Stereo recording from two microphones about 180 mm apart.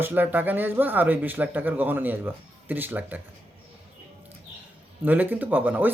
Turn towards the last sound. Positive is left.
turn(degrees=-10)  # may be behind; listen again after turning